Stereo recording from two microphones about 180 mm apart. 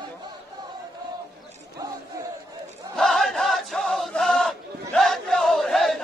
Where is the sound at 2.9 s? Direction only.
Centre (ahead or behind).